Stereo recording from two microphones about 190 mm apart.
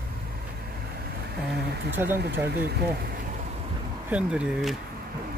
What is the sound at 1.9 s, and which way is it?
Speech, 10° right (ahead or behind).